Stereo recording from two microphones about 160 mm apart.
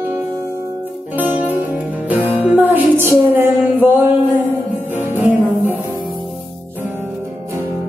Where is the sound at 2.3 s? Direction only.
10° right (ahead or behind).